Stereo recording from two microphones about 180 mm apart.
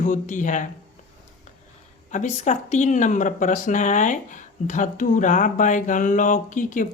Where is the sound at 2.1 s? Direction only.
40° left (ahead or behind).